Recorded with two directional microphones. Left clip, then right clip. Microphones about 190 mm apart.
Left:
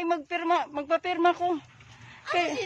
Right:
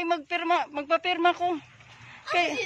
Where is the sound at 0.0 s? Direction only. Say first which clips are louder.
Right 1 dB; 15° left (ahead or behind).